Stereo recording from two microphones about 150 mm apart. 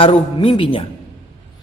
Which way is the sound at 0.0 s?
35° left (ahead or behind).